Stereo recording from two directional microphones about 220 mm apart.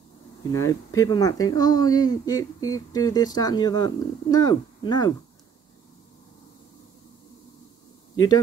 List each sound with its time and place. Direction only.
0.5 s speech: 15° left (ahead or behind)